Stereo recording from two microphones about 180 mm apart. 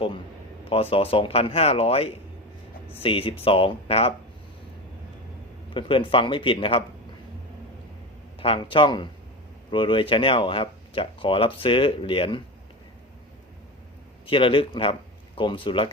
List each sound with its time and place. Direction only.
0.7 s speech: 30° left (ahead or behind)
5.7 s speech: 30° left (ahead or behind)
8.4 s speech: 30° left (ahead or behind)
14.3 s speech: 30° left (ahead or behind)